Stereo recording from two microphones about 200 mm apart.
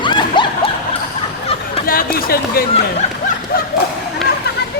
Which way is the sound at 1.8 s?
45° left (ahead or behind).